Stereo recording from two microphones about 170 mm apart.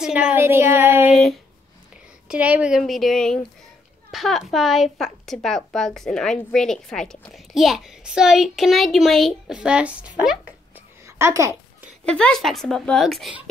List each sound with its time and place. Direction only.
0.0 s speech: 5° right (ahead or behind)
1.1 s a woman's voice: centre (ahead or behind)
11.1 s a sound: 15° right (ahead or behind)
12.0 s a woman's voice: 5° left (ahead or behind)